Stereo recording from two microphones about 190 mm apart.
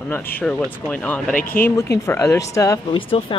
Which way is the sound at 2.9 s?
25° left (ahead or behind).